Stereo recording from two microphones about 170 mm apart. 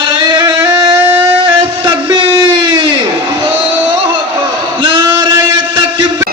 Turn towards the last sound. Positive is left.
turn(degrees=-25)  # may be behind; listen again after turning